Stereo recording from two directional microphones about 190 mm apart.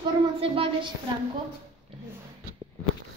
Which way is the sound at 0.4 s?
30° right (ahead or behind).